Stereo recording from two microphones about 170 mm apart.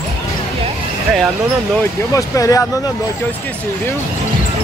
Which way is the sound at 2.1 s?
20° left (ahead or behind).